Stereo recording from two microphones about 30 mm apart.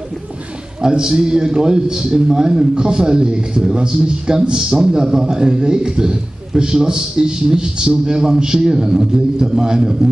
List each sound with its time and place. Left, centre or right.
0.7 s a man's voice: right